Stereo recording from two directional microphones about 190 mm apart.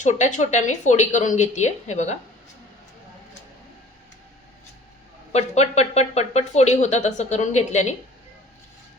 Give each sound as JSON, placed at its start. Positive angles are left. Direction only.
{"t": 0.0, "sound": "speech", "side_deg": 40}
{"t": 5.3, "sound": "speech", "side_deg": 35}